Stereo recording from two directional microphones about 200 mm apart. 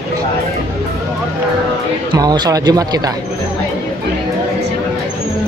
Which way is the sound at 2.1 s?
20° right (ahead or behind).